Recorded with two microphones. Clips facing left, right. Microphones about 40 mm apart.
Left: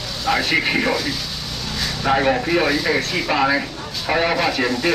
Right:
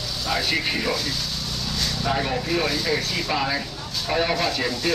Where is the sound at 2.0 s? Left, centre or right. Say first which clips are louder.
Left 8 dB; left.